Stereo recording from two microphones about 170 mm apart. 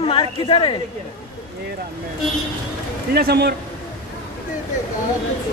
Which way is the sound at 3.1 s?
70° right (ahead or behind).